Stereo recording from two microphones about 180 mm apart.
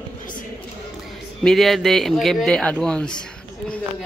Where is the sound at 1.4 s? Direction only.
Centre (ahead or behind).